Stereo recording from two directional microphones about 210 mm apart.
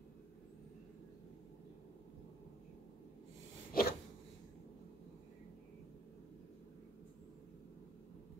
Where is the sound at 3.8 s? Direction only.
45° left (ahead or behind).